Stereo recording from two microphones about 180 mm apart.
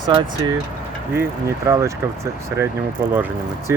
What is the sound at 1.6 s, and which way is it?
Speech, 15° right (ahead or behind).